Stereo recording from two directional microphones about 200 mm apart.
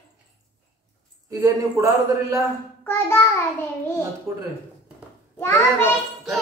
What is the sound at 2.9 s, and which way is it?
Child singing, 10° left (ahead or behind).